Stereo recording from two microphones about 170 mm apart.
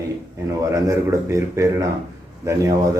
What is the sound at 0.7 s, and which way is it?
A man's voice, 20° right (ahead or behind).